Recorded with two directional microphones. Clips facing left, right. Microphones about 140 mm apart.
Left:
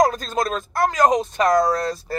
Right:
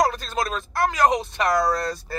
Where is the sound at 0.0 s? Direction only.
45° left (ahead or behind).